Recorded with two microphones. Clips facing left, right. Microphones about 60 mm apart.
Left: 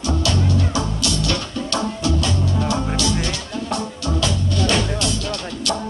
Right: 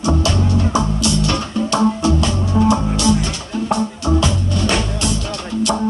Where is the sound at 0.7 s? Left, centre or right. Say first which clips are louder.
Right 5 dB; right.